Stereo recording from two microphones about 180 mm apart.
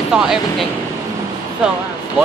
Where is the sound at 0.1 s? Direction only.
5° right (ahead or behind).